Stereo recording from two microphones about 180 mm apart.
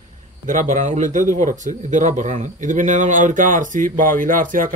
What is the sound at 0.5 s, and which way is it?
A man's voice, 45° right (ahead or behind).